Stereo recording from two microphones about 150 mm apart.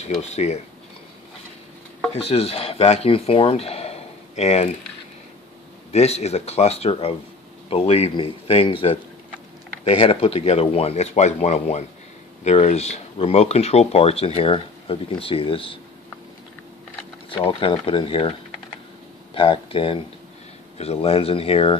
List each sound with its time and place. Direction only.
0.0 s speech: 45° left (ahead or behind)
2.1 s speech: 40° left (ahead or behind)
5.9 s speech: 45° left (ahead or behind)
17.5 s speech: 35° left (ahead or behind)
19.3 s speech: 35° left (ahead or behind)